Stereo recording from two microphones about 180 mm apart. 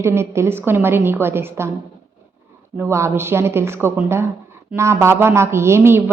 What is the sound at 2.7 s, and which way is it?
Speech, 15° right (ahead or behind).